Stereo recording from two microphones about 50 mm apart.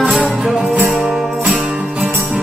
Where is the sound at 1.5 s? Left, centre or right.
Right.